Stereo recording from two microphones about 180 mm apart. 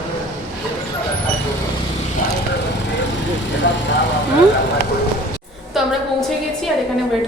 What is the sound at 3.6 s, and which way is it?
Vehicle, 70° left (ahead or behind).